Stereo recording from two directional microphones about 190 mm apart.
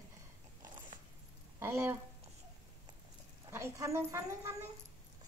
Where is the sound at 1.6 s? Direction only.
15° right (ahead or behind).